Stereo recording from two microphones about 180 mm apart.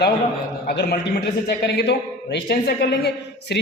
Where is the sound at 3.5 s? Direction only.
65° left (ahead or behind).